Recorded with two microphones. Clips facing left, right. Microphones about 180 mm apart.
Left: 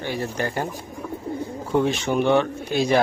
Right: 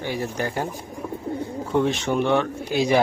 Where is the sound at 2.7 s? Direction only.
15° right (ahead or behind).